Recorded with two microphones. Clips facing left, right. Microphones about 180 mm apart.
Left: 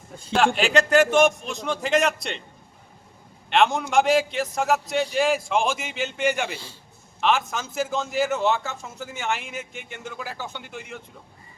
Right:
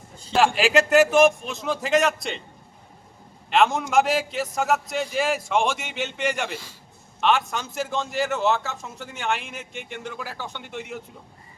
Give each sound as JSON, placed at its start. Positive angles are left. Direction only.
{"t": 0.3, "sound": "a man's voice", "side_deg": -5}
{"t": 3.5, "sound": "a man's voice", "side_deg": 0}